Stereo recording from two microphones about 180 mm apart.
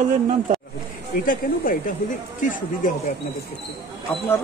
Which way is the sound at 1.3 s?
50° left (ahead or behind).